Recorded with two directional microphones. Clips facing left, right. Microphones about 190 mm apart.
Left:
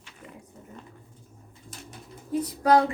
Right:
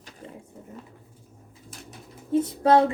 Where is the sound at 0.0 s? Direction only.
35° right (ahead or behind).